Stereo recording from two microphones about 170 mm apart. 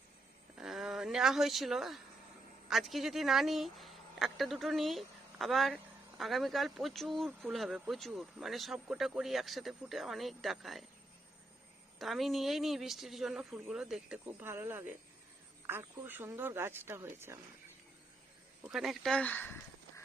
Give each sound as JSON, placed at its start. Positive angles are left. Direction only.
{"t": 0.6, "sound": "speech", "side_deg": 0}
{"t": 11.9, "sound": "speech", "side_deg": 0}
{"t": 18.6, "sound": "speech", "side_deg": 0}